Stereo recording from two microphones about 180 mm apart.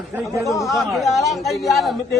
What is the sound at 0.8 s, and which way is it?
A man's voice, centre (ahead or behind).